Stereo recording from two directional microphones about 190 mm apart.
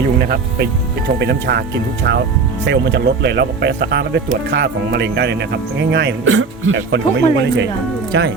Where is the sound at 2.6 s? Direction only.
65° right (ahead or behind).